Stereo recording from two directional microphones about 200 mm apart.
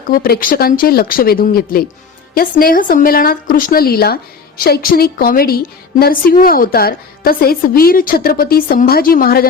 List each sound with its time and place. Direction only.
0.1 s a woman's voice: 45° left (ahead or behind)